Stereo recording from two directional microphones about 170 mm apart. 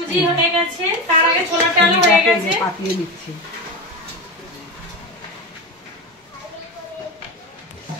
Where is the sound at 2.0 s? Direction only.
90° right.